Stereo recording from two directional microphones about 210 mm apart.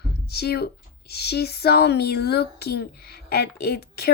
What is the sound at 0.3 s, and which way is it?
Speech, 50° left (ahead or behind).